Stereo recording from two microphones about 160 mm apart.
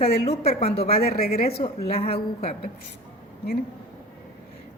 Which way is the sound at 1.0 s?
75° left (ahead or behind).